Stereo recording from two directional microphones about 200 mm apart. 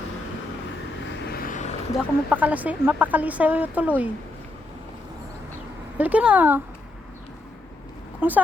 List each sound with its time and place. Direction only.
1.3 s vehicle: 45° left (ahead or behind)
2.0 s speech: 10° right (ahead or behind)
6.0 s speech: 5° right (ahead or behind)
8.2 s speech: 10° right (ahead or behind)